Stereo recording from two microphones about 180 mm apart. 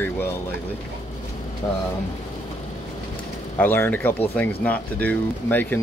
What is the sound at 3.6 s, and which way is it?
Speech, 10° left (ahead or behind).